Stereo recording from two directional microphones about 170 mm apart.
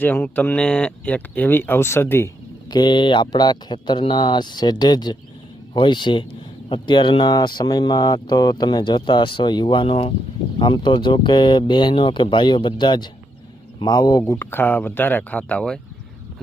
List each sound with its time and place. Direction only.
0.0 s speech: 10° left (ahead or behind)